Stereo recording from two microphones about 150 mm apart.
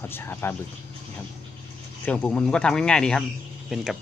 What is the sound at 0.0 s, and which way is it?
Speech, 15° left (ahead or behind).